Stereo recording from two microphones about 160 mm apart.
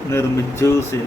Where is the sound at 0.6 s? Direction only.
15° left (ahead or behind).